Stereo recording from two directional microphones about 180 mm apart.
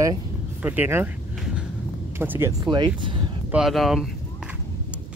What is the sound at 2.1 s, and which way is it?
Speech, 10° right (ahead or behind).